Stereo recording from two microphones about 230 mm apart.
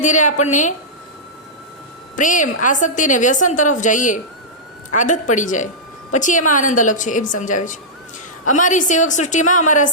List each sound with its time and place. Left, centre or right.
0.0 s a woman's voice: left
2.1 s a woman's voice: left